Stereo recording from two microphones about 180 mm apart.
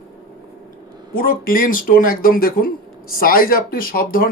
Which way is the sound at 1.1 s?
55° left (ahead or behind).